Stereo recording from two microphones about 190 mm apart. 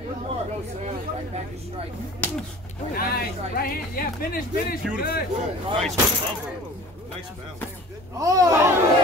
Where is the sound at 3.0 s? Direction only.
50° left (ahead or behind).